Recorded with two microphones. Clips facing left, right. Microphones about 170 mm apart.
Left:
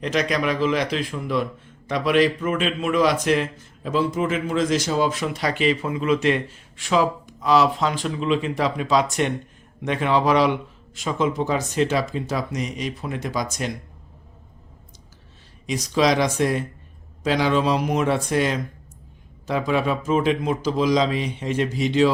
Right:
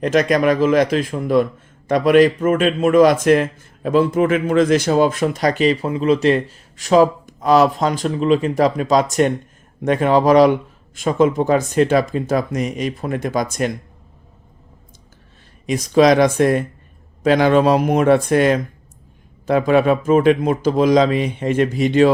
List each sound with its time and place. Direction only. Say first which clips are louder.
0.0 s a man's voice: right 7 dB; 50° right (ahead or behind)
15.6 s a man's voice: right 7 dB; 55° right (ahead or behind)